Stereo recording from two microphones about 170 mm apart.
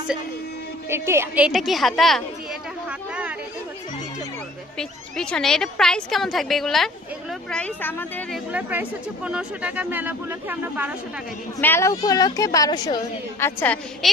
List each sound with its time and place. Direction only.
0.9 s speech: 15° right (ahead or behind)
1.5 s a woman's voice: centre (ahead or behind)
3.1 s chatter: 5° right (ahead or behind)
4.8 s a woman's voice: 5° left (ahead or behind)
8.5 s speech: 10° right (ahead or behind)
11.6 s a woman's voice: 15° left (ahead or behind)
13.4 s a woman's voice: 10° left (ahead or behind)